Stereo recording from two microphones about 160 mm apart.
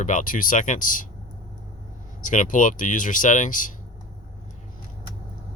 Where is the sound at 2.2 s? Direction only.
55° left (ahead or behind).